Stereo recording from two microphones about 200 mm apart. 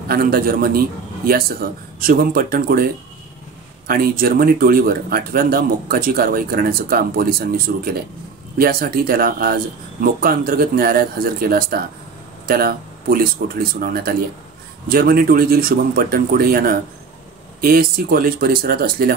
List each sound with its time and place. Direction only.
0.1 s speech: 50° right (ahead or behind)